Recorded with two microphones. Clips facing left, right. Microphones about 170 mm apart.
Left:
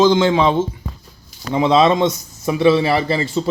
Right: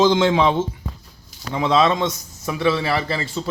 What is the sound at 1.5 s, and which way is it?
A man's voice, 20° left (ahead or behind).